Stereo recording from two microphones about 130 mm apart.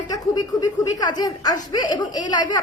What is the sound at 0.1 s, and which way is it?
A woman's voice, 30° left (ahead or behind).